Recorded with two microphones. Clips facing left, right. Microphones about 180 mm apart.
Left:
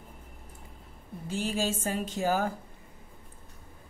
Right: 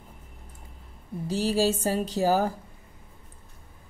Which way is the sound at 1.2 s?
40° right (ahead or behind).